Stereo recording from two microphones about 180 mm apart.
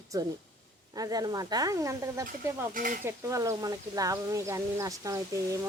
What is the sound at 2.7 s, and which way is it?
Dishes, 50° right (ahead or behind).